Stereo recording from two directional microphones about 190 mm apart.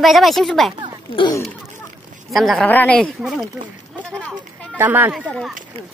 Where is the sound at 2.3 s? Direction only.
Centre (ahead or behind).